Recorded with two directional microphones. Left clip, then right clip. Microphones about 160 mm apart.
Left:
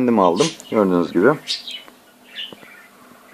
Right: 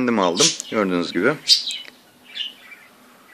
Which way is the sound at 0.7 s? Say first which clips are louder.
Left 4 dB; 40° right (ahead or behind).